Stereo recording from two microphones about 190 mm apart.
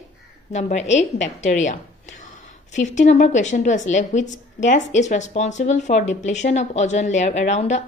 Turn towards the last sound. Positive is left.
turn(degrees=40)  # may be behind; listen again after turning